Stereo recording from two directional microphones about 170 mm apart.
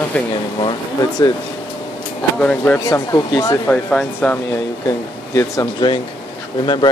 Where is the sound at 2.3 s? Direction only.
10° left (ahead or behind).